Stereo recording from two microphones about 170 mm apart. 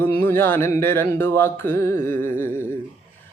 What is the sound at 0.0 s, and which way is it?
Speech, 10° left (ahead or behind).